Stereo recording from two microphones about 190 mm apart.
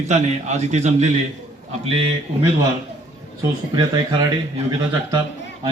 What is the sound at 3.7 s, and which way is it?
Speech, 20° right (ahead or behind).